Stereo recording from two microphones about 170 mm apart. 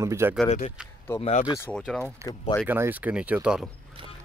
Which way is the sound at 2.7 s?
10° right (ahead or behind).